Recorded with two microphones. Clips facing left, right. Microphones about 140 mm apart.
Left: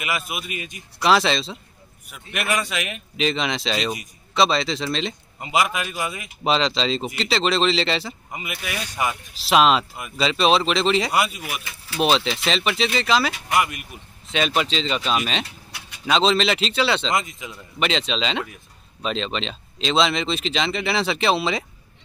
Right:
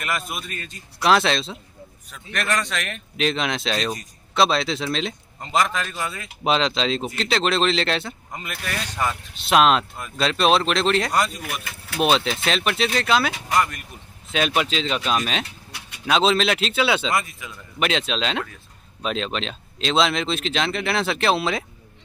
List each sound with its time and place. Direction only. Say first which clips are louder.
0.3 s a man's voice: left 2 dB; 10° left (ahead or behind)
0.9 s a man's voice: even; centre (ahead or behind)
6.4 s speech: even; centre (ahead or behind)
9.5 s a man's voice: even; centre (ahead or behind)
14.3 s speech: even; centre (ahead or behind)
17.1 s speech: even; 20° left (ahead or behind)
17.7 s speech: even; centre (ahead or behind)